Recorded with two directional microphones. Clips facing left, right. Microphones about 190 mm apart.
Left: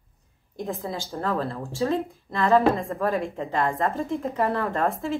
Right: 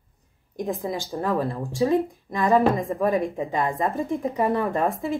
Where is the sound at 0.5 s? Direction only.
15° right (ahead or behind).